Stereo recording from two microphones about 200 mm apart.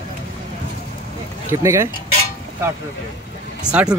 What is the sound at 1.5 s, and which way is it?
Speech, 15° right (ahead or behind).